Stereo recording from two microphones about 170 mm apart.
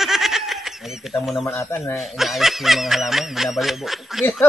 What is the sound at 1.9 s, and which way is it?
Speech, centre (ahead or behind).